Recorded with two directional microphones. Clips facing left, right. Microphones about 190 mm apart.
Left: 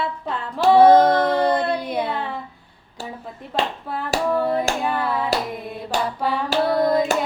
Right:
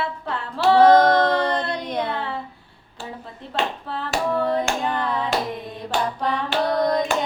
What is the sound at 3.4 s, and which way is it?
Hands, 15° left (ahead or behind).